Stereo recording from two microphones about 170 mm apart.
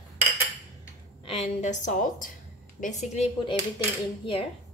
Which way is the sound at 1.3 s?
40° left (ahead or behind).